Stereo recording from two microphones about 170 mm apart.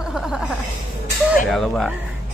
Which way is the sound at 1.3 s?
Centre (ahead or behind).